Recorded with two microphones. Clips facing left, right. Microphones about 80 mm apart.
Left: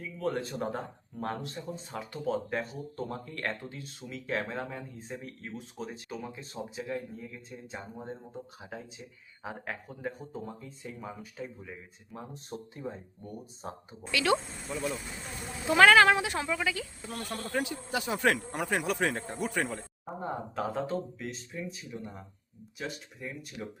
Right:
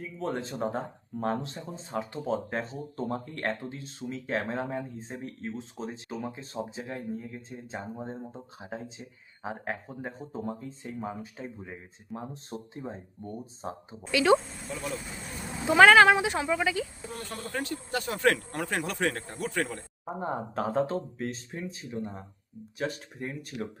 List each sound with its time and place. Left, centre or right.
0.0 s speech: right
14.3 s speech: centre
15.6 s speech: centre
17.5 s speech: centre
20.1 s speech: centre
20.6 s speech: right
22.8 s speech: right